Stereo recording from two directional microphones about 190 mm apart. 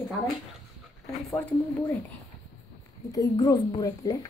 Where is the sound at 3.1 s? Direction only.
20° left (ahead or behind).